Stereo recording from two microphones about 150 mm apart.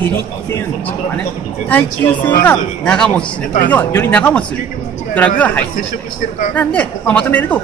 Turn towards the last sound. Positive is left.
turn(degrees=10)  # may be behind; listen again after turning